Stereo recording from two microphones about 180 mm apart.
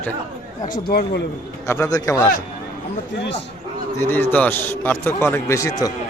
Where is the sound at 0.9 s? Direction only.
60° left (ahead or behind).